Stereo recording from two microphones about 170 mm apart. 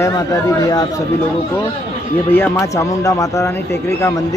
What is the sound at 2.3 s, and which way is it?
A man's voice, 15° left (ahead or behind).